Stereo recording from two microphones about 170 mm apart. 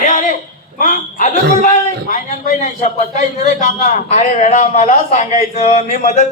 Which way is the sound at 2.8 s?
50° left (ahead or behind).